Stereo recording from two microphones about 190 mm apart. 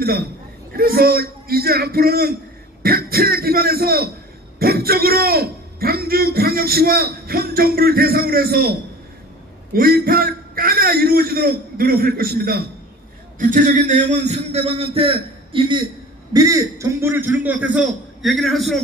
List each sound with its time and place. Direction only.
0.0 s a man's voice: 55° right (ahead or behind)
9.8 s a man's voice: 50° right (ahead or behind)
13.4 s a man's voice: 40° right (ahead or behind)
16.3 s a man's voice: 15° right (ahead or behind); by 18.8 s centre (ahead or behind)